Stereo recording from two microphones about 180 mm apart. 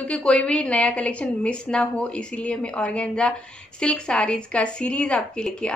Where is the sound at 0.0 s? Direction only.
5° left (ahead or behind).